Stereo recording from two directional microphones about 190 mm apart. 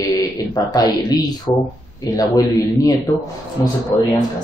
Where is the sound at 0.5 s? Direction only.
20° left (ahead or behind).